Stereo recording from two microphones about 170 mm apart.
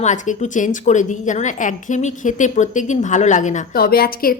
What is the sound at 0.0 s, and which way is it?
A woman's voice, 45° left (ahead or behind).